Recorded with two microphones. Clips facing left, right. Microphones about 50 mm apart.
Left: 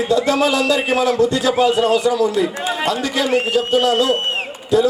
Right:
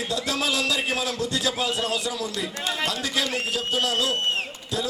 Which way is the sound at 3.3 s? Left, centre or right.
Left.